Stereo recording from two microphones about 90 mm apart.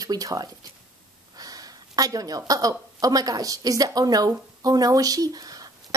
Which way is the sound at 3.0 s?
45° right (ahead or behind).